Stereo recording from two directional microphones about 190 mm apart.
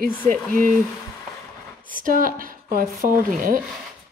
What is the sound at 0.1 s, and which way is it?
Speech, 10° left (ahead or behind).